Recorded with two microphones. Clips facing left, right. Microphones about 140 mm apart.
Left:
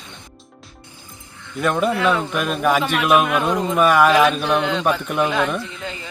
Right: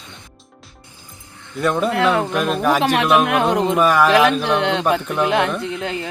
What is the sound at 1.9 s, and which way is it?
Speech, 65° right (ahead or behind).